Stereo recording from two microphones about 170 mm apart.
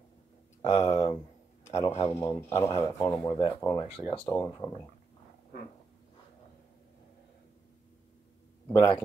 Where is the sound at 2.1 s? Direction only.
15° left (ahead or behind).